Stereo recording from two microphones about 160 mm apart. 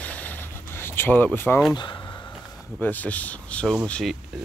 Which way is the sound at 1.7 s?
30° left (ahead or behind).